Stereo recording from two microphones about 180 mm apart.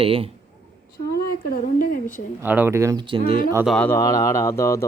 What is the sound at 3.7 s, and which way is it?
Speech, 10° left (ahead or behind).